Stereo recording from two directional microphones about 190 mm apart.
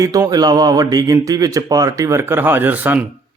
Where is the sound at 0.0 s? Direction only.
20° right (ahead or behind).